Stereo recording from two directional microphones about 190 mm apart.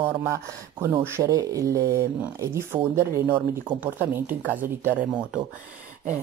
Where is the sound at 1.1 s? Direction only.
15° right (ahead or behind).